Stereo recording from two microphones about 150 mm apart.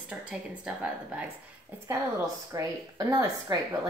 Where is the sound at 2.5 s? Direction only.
20° right (ahead or behind).